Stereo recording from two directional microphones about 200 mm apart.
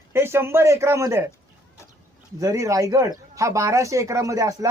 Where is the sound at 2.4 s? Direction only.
15° right (ahead or behind).